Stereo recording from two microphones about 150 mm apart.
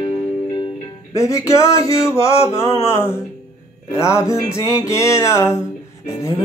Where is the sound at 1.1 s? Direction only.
20° left (ahead or behind).